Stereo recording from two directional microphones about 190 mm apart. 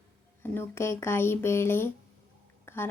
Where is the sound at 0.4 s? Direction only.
10° left (ahead or behind).